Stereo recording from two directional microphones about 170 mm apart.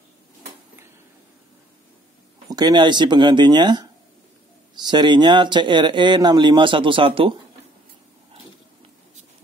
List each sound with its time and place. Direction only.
2.5 s speech: 25° right (ahead or behind)